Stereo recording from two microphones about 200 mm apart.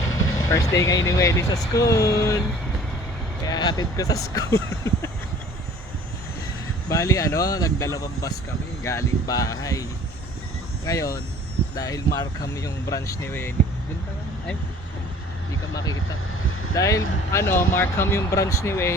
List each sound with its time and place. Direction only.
0.1 s speech: 15° left (ahead or behind)
3.4 s speech: 20° left (ahead or behind)
6.9 s speech: 15° left (ahead or behind)
10.8 s speech: 15° left (ahead or behind)
15.7 s speech: 20° left (ahead or behind)